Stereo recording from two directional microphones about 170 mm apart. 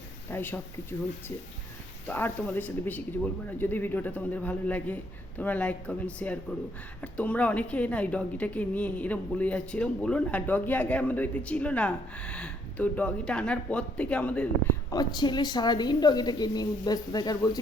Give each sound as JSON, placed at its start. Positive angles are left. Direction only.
{"t": 0.3, "sound": "a woman's voice", "side_deg": 15}
{"t": 2.0, "sound": "a woman's voice", "side_deg": 10}
{"t": 14.8, "sound": "a woman's voice", "side_deg": 25}